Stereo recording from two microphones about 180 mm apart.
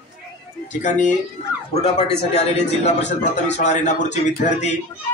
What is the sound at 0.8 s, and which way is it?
A man's voice, 45° left (ahead or behind).